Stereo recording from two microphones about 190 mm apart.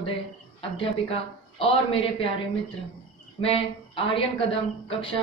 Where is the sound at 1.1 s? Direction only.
30° left (ahead or behind).